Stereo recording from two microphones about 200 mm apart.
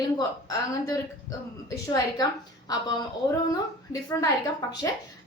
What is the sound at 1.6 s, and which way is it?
A woman's voice, 20° left (ahead or behind).